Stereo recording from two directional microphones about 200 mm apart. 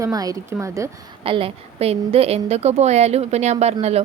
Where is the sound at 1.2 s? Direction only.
25° right (ahead or behind).